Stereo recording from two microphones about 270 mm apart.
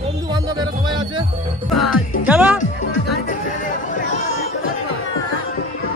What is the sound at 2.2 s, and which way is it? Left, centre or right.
Speech, centre.